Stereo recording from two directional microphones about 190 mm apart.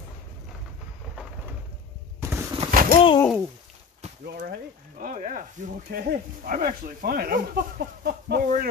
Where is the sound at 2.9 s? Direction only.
30° left (ahead or behind).